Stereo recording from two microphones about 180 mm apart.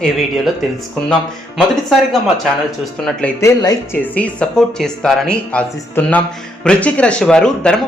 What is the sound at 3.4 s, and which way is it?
Speech, 20° left (ahead or behind).